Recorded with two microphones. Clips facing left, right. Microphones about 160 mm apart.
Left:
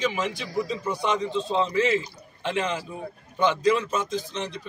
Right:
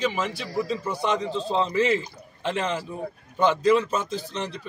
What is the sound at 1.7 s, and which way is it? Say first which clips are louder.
Speech: right 1 dB; 45° right (ahead or behind).